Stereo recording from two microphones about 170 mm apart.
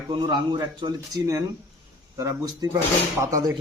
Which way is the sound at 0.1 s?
25° right (ahead or behind).